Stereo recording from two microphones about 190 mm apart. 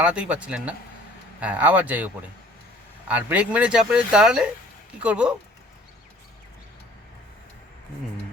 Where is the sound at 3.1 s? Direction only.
10° right (ahead or behind).